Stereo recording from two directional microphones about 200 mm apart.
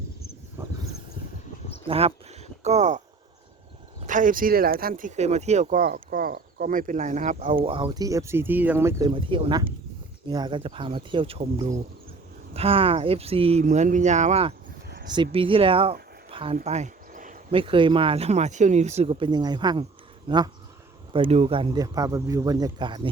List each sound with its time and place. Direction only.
0.6 s a sound: 10° right (ahead or behind)
1.9 s speech: 30° right (ahead or behind)
4.0 s speech: 40° right (ahead or behind)
7.5 s speech: 25° right (ahead or behind)
16.6 s a sound: 35° right (ahead or behind)
17.5 s speech: 25° right (ahead or behind)